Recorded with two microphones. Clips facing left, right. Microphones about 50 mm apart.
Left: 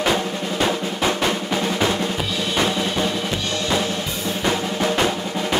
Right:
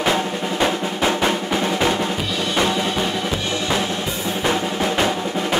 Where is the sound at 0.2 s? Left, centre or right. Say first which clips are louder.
Right 2 dB; centre.